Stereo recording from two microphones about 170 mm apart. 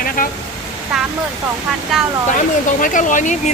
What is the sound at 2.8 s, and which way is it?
Speech, 50° left (ahead or behind).